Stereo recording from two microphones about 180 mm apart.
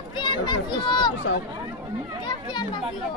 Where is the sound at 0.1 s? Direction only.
25° left (ahead or behind).